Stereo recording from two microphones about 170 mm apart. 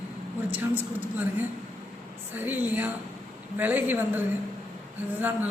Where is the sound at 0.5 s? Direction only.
10° right (ahead or behind).